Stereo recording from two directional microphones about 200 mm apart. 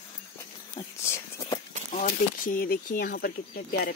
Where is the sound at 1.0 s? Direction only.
15° left (ahead or behind).